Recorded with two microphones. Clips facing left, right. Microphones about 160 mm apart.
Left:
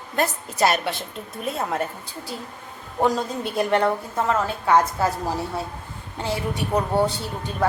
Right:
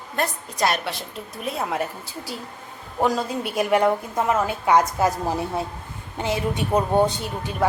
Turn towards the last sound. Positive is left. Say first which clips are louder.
# right 1 dB
turn(degrees=-15)  # may be behind; listen again after turning